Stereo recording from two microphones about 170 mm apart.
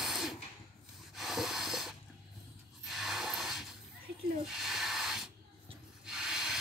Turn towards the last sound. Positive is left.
turn(degrees=-5)  # may be behind; listen again after turning